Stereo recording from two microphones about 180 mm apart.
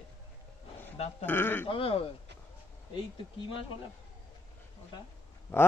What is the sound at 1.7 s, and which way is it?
Speech, 30° left (ahead or behind).